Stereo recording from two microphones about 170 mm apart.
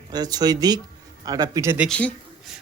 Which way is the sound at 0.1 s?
25° right (ahead or behind).